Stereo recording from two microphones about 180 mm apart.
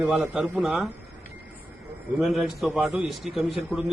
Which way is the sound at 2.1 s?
Centre (ahead or behind).